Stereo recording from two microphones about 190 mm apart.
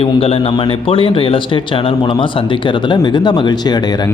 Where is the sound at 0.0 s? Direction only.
30° left (ahead or behind).